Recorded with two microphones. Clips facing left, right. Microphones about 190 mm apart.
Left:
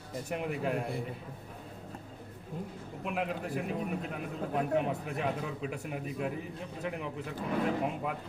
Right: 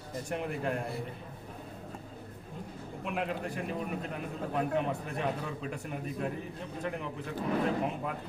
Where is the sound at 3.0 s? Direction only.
Centre (ahead or behind).